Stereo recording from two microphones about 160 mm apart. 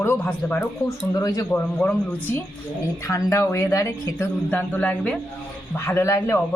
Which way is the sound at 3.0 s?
20° left (ahead or behind).